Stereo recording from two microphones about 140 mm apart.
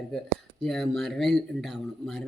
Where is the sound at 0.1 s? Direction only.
Centre (ahead or behind).